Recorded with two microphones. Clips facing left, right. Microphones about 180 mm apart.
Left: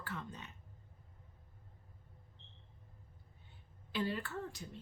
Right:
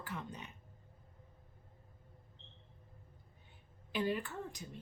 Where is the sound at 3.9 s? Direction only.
15° right (ahead or behind).